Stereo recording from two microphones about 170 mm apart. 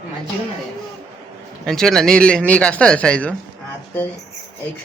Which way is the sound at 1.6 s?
5° left (ahead or behind).